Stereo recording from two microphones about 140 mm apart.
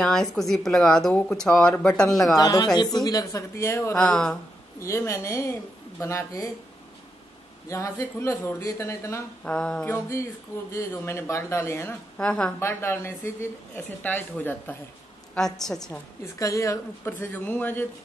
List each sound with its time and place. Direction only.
0.0 s speech: 5° left (ahead or behind)
2.3 s speech: 25° left (ahead or behind)
3.9 s speech: 5° left (ahead or behind)
4.7 s speech: 20° left (ahead or behind)
7.7 s speech: 20° left (ahead or behind)
9.4 s speech: 5° left (ahead or behind)
9.8 s speech: 20° left (ahead or behind)
12.2 s speech: 5° left (ahead or behind)
12.5 s speech: 20° left (ahead or behind)
15.3 s speech: 5° left (ahead or behind)
16.3 s speech: 25° left (ahead or behind)